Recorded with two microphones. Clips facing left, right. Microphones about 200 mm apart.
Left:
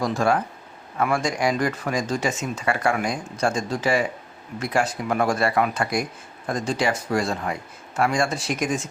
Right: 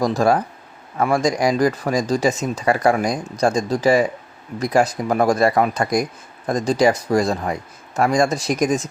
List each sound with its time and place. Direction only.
0.0 s speech: 35° right (ahead or behind)